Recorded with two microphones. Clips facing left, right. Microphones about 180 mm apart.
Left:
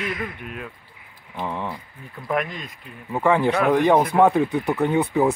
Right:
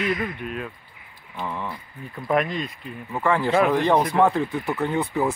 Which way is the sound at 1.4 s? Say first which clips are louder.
Left 2 dB; 15° left (ahead or behind).